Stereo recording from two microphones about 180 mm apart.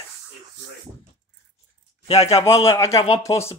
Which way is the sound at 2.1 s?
35° left (ahead or behind).